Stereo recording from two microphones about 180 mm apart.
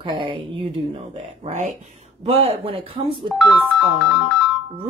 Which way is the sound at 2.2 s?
35° right (ahead or behind).